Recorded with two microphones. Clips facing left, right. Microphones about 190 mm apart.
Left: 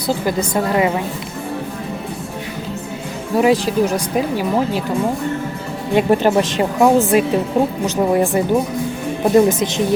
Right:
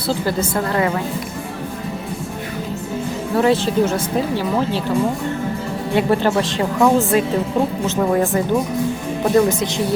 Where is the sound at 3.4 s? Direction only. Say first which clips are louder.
Left 2 dB; 15° left (ahead or behind).